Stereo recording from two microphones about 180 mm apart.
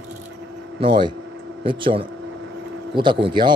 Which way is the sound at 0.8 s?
30° right (ahead or behind).